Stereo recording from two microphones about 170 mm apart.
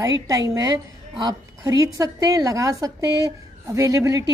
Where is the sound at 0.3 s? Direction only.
20° right (ahead or behind).